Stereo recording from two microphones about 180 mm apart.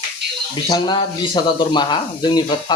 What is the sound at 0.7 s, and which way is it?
Speech, 30° left (ahead or behind).